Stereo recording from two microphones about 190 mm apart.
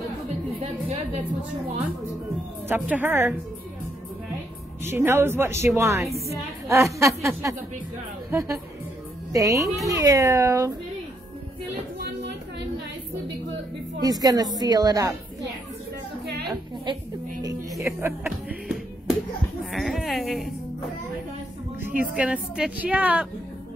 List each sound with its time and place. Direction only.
2.7 s a woman's voice: 10° right (ahead or behind)
4.8 s a woman's voice: 10° right (ahead or behind)
12.0 s a sound: 65° right (ahead or behind)
14.0 s a woman's voice: 20° right (ahead or behind)
16.8 s music: 20° right (ahead or behind); by 19.1 s 5° right (ahead or behind)
19.6 s speech: centre (ahead or behind)
21.9 s a woman's voice: 5° right (ahead or behind)